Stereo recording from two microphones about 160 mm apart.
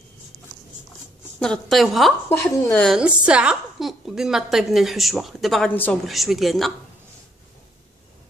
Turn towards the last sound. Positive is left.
turn(degrees=0)  # may be behind; listen again after turning